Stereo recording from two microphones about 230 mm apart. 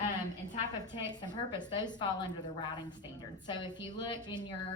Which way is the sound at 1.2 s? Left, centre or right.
Centre.